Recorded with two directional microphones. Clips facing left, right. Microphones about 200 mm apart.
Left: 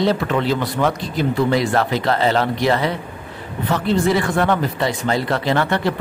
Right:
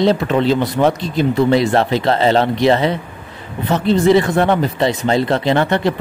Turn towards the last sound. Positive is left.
turn(degrees=-20)  # may be behind; listen again after turning